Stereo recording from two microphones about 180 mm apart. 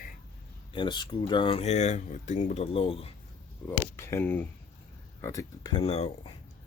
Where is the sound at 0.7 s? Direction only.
25° left (ahead or behind).